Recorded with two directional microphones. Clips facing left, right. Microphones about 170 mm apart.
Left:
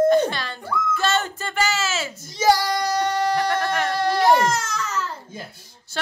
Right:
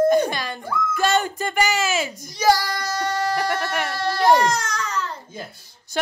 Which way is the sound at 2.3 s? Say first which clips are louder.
Left 1 dB; 25° left (ahead or behind).